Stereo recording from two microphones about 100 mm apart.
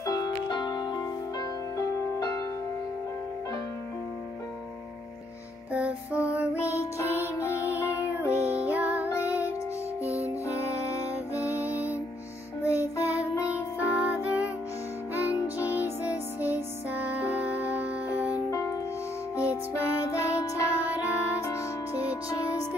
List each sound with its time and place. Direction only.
0.0 s music: 40° left (ahead or behind)
5.7 s music: 15° right (ahead or behind)
6.5 s music: 30° left (ahead or behind)
8.6 s music: 15° right (ahead or behind)
10.2 s music: 30° left (ahead or behind)
11.5 s music: 15° right (ahead or behind)
12.6 s music: 30° left (ahead or behind)
13.8 s music: 15° right (ahead or behind)
16.3 s music: 20° right (ahead or behind)
18.5 s music: 30° left (ahead or behind)
20.9 s music: 15° right (ahead or behind)
21.4 s music: 30° left (ahead or behind)